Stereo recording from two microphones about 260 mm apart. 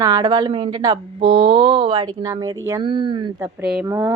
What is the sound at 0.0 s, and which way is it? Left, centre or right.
A woman's voice, centre.